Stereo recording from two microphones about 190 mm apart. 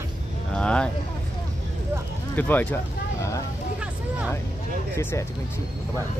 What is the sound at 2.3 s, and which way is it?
Speech, 10° left (ahead or behind).